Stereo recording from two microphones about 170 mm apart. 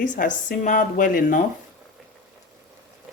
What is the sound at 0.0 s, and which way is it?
Speech, 50° left (ahead or behind).